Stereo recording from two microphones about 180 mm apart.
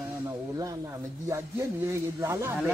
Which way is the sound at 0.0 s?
15° right (ahead or behind).